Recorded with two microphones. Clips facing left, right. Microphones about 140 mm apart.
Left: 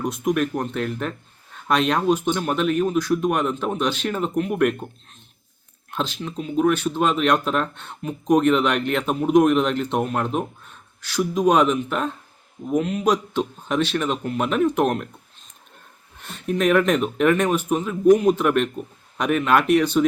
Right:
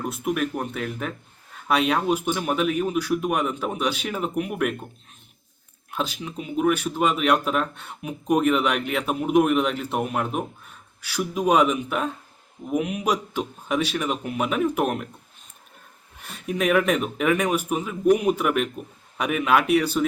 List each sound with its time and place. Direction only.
0.0 s speech: 5° right (ahead or behind)
5.9 s speech: 10° right (ahead or behind)
16.2 s speech: 10° right (ahead or behind)